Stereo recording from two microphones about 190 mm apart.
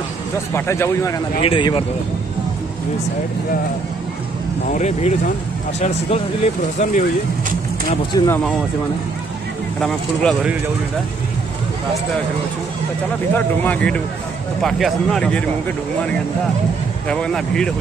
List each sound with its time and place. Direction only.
0.6 s speech: 15° left (ahead or behind)
1.4 s speech: 25° left (ahead or behind)
4.6 s speech: 40° left (ahead or behind)
8.1 s speech: 20° left (ahead or behind)
9.8 s speech: centre (ahead or behind)
13.3 s speech: 5° left (ahead or behind)
17.1 s speech: 5° left (ahead or behind)